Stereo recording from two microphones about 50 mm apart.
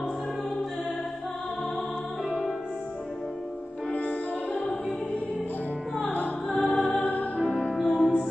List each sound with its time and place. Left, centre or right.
2.2 s music: centre
3.9 s music: left
6.5 s music: centre
7.0 s music: left
7.7 s music: centre